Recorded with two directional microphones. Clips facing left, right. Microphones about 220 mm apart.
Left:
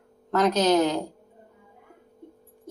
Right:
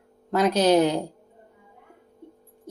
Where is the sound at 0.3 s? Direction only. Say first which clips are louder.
Right 1 dB; 10° right (ahead or behind).